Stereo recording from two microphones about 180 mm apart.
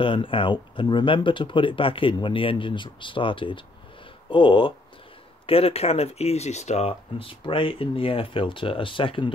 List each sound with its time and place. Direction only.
0.0 s speech: 30° left (ahead or behind)